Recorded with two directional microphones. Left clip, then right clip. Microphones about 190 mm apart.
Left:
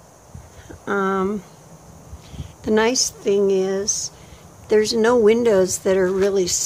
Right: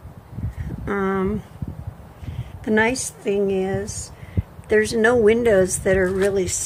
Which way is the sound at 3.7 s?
10° left (ahead or behind).